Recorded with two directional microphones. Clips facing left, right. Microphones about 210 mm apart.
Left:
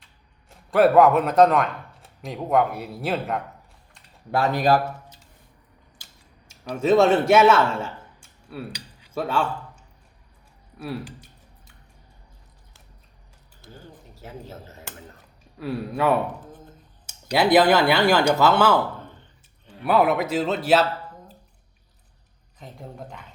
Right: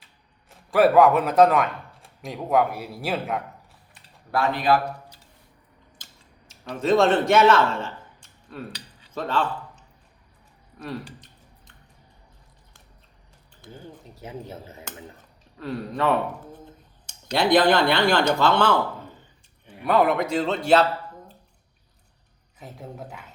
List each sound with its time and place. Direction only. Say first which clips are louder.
0.7 s speech: left 1 dB; centre (ahead or behind)
4.5 s a man's voice: left 2 dB; 40° left (ahead or behind)
6.5 s a man's voice: left 2 dB; 10° left (ahead or behind)
9.0 s a sound: left 1 dB; 10° left (ahead or behind)
10.8 s speech: left 2 dB; 10° left (ahead or behind)
13.6 s speech: right 3 dB; 20° right (ahead or behind)
15.5 s speech: left 2 dB; 10° left (ahead or behind)
19.8 s speech: even; 5° left (ahead or behind)
22.5 s speech: right 1 dB; 5° right (ahead or behind)